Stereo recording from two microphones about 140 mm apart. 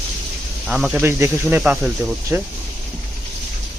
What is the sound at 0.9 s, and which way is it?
Speech, 15° right (ahead or behind).